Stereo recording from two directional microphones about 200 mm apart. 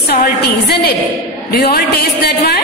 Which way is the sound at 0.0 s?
50° left (ahead or behind).